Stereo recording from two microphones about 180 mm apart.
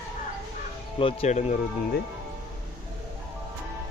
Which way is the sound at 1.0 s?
30° left (ahead or behind).